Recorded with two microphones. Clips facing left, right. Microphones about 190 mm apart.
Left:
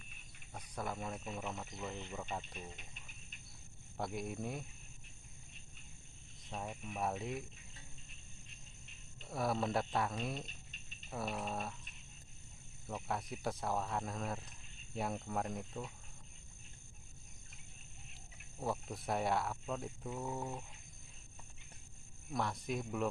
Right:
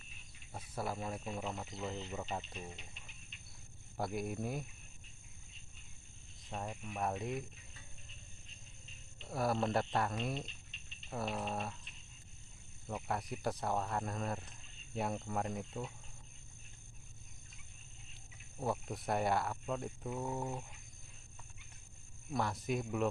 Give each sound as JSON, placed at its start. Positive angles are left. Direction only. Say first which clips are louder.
{"t": 0.5, "sound": "speech", "louder": "right 2 dB", "side_deg": -5}
{"t": 2.3, "sound": "speech", "louder": "right 2 dB", "side_deg": -5}
{"t": 3.9, "sound": "speech", "louder": "right 2 dB", "side_deg": 0}
{"t": 6.5, "sound": "speech", "louder": "right 1 dB", "side_deg": 0}
{"t": 9.2, "sound": "speech", "louder": "right 2 dB", "side_deg": 0}
{"t": 12.9, "sound": "speech", "louder": "right 1 dB", "side_deg": 0}
{"t": 18.6, "sound": "speech", "louder": "right 2 dB", "side_deg": 0}
{"t": 22.3, "sound": "speech", "louder": "right 2 dB", "side_deg": 0}